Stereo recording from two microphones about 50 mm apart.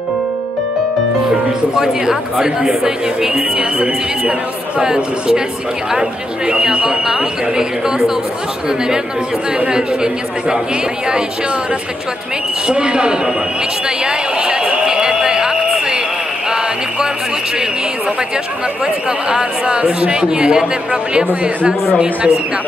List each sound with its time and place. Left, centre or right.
1.8 s speech: centre
12.6 s speech: centre
13.8 s a sound: centre
19.0 s speech: centre